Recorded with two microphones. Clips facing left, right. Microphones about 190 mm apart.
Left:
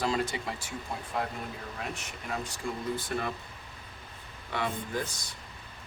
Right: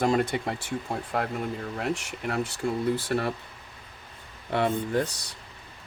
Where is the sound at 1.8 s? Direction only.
75° right (ahead or behind).